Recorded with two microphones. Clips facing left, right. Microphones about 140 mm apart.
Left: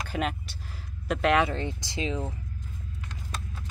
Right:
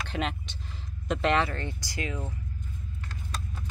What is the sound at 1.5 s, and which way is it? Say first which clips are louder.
Speech: left 4 dB; 20° left (ahead or behind).